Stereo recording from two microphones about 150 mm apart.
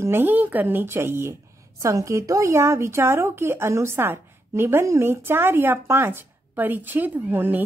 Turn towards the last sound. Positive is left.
turn(degrees=-15)  # may be behind; listen again after turning